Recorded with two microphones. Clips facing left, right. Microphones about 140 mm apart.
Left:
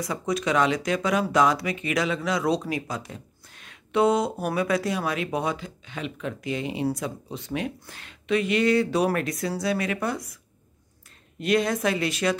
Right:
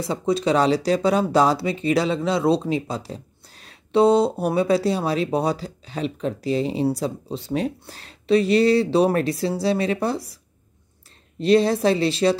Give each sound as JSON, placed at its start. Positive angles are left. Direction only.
{"t": 0.0, "sound": "speech", "side_deg": -30}
{"t": 11.3, "sound": "speech", "side_deg": -30}